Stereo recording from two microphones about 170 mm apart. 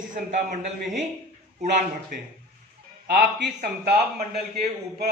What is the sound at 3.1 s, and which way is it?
A man's voice, 65° right (ahead or behind).